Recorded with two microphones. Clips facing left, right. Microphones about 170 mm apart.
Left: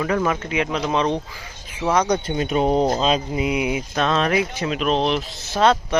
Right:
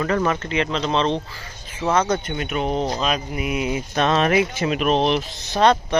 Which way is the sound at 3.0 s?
25° left (ahead or behind).